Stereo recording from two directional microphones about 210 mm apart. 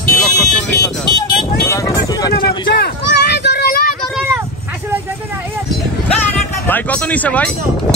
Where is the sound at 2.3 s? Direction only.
50° left (ahead or behind).